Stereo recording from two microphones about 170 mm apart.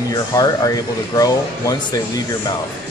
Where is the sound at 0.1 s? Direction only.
20° left (ahead or behind).